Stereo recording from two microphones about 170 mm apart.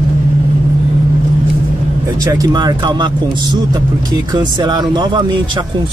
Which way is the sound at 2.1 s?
20° right (ahead or behind).